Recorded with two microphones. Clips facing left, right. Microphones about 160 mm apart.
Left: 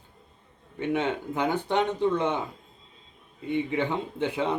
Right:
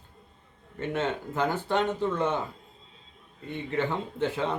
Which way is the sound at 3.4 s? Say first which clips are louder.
Left 3 dB; 15° left (ahead or behind).